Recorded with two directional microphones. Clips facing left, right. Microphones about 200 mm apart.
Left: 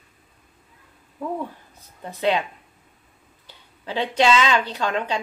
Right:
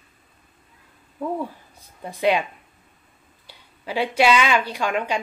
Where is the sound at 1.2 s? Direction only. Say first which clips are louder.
Right 2 dB; 10° right (ahead or behind).